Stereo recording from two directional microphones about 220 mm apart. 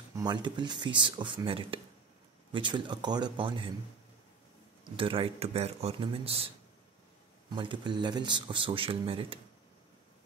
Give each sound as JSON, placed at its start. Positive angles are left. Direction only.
{"t": 0.2, "sound": "speech", "side_deg": -20}
{"t": 4.9, "sound": "speech", "side_deg": -25}